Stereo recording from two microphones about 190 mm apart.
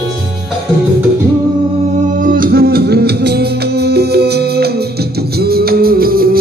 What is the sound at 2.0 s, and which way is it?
Music, 45° right (ahead or behind).